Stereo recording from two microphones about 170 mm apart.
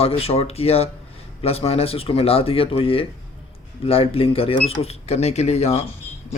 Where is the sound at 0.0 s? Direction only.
35° left (ahead or behind).